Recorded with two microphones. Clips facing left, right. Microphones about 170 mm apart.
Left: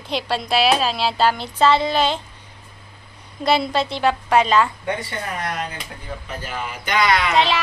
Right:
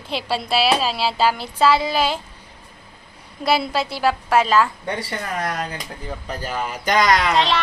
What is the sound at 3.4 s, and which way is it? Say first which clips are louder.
A child's voice: left 1 dB; 5° right (ahead or behind).